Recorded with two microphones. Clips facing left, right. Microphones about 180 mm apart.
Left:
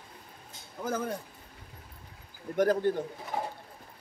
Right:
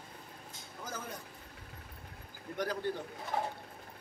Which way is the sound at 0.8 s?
60° left (ahead or behind).